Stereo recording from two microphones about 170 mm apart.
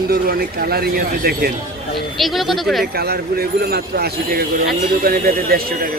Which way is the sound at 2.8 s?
70° right (ahead or behind).